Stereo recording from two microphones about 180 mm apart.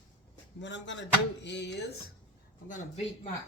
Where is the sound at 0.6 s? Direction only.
85° left.